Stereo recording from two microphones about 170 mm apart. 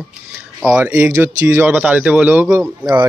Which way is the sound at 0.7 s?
10° right (ahead or behind).